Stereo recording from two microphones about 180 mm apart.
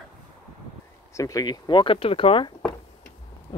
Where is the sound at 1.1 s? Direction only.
15° left (ahead or behind).